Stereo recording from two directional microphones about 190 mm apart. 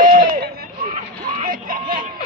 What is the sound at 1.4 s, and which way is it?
Speech, 45° right (ahead or behind).